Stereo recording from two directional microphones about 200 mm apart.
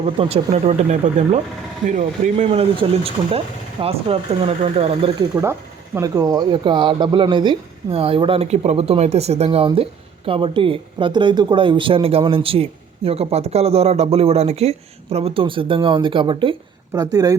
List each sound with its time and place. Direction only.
0.2 s speech: 30° right (ahead or behind)
5.3 s speech: 10° right (ahead or behind)